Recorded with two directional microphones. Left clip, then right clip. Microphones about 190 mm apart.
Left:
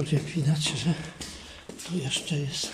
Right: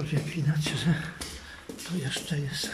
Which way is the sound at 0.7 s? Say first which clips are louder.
Right 1 dB; 10° left (ahead or behind).